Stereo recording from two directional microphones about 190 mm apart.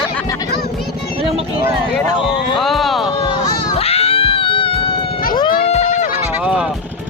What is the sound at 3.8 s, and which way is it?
Cat, 30° left (ahead or behind).